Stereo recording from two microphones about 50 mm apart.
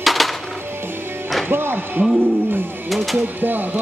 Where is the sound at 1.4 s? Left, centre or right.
Right.